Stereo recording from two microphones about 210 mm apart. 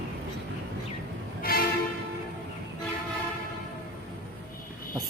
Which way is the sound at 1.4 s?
45° left (ahead or behind).